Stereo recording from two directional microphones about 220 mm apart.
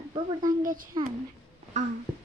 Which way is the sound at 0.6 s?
40° right (ahead or behind).